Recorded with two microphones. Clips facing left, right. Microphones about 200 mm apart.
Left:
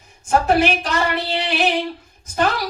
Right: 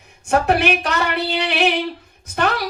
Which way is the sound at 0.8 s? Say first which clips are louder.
Even; 65° right (ahead or behind).